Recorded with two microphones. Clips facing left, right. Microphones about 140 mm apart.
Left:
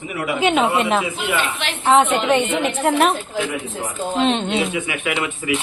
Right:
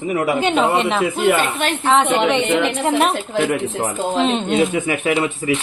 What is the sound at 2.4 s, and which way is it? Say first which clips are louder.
Speech: right 3 dB; 70° right (ahead or behind).